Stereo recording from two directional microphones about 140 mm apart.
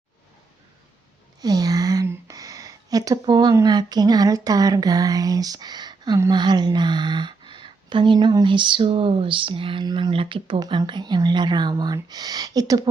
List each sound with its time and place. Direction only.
1.4 s speech: 25° right (ahead or behind)